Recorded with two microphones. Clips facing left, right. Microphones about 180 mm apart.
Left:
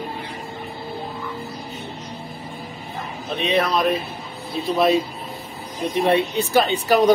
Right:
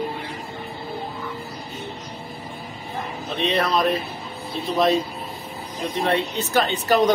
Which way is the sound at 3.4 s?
Centre (ahead or behind).